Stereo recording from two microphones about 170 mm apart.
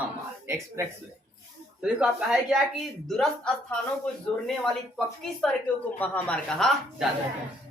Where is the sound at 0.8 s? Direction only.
15° right (ahead or behind).